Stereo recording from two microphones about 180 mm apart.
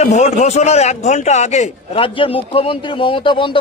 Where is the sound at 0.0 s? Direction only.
40° left (ahead or behind).